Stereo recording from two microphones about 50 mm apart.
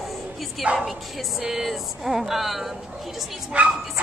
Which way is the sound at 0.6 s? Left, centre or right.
Right.